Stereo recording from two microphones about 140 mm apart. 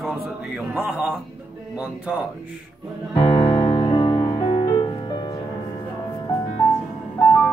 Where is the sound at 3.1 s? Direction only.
40° left (ahead or behind).